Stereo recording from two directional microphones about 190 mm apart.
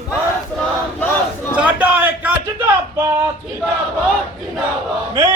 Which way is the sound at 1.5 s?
5° right (ahead or behind).